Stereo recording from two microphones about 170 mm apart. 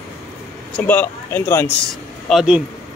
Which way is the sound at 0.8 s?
10° left (ahead or behind).